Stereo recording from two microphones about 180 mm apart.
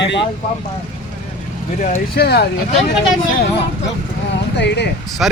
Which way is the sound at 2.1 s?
65° left (ahead or behind).